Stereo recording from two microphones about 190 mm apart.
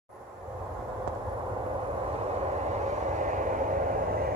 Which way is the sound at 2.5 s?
35° right (ahead or behind).